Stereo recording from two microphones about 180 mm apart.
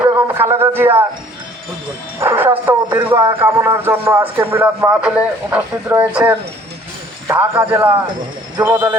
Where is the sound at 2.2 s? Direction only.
10° right (ahead or behind).